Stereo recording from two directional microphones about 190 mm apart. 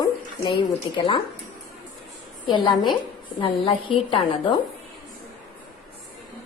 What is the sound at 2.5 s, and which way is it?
A woman's voice, 25° left (ahead or behind).